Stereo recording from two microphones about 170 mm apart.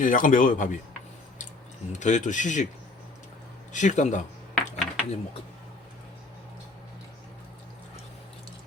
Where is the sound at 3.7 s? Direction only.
45° left (ahead or behind).